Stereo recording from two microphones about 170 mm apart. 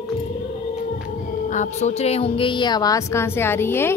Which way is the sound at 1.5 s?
45° left (ahead or behind).